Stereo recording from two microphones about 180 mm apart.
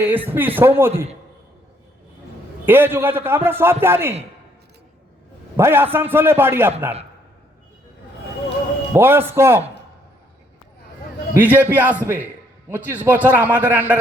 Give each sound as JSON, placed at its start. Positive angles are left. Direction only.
{"t": 0.0, "sound": "a man's voice", "side_deg": -10}
{"t": 2.6, "sound": "a man's voice", "side_deg": -10}
{"t": 5.5, "sound": "a man's voice", "side_deg": -10}
{"t": 8.9, "sound": "a man's voice", "side_deg": -10}
{"t": 11.3, "sound": "a man's voice", "side_deg": -10}